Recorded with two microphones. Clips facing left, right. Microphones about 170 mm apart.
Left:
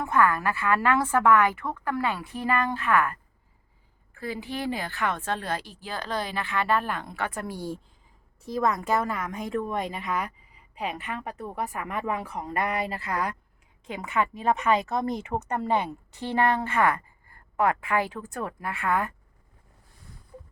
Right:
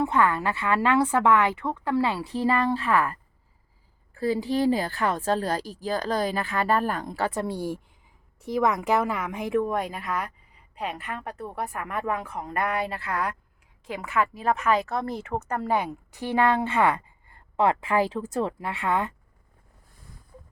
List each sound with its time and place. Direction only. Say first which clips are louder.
0.0 s a woman's voice: right 1 dB; 25° right (ahead or behind)
8.4 s a woman's voice: right 2 dB; 15° right (ahead or behind)